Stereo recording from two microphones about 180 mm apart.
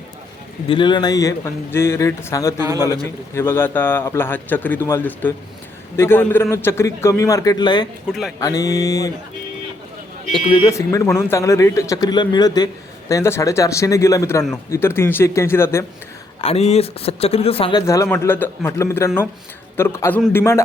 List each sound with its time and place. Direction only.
0.7 s speech: 25° left (ahead or behind)
2.6 s a man's voice: 20° right (ahead or behind)
3.3 s a man's voice: 15° left (ahead or behind)
10.3 s speech: 30° left (ahead or behind)
10.7 s a man's voice: 15° left (ahead or behind)
16.4 s a man's voice: 35° left (ahead or behind); by 20.7 s 15° left (ahead or behind)